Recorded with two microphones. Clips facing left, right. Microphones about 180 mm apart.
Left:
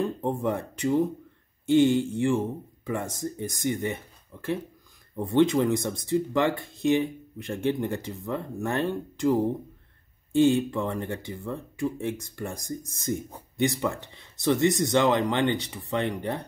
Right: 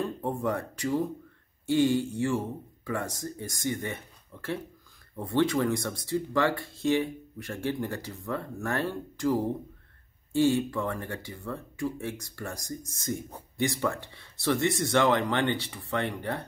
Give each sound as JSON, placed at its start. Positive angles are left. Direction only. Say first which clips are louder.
{"t": 0.2, "sound": "speech", "louder": "left 2 dB", "side_deg": 20}